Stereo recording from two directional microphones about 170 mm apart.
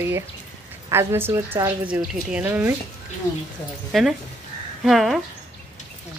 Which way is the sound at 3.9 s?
Centre (ahead or behind).